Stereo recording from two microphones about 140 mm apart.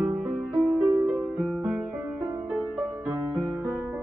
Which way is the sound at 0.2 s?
10° right (ahead or behind).